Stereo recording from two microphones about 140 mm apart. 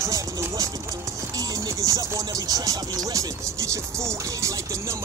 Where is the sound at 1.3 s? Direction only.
25° right (ahead or behind).